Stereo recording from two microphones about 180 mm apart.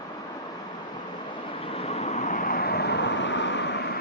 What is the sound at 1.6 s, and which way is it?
Vehicle, 35° left (ahead or behind).